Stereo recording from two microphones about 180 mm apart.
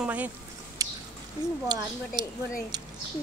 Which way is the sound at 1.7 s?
25° right (ahead or behind).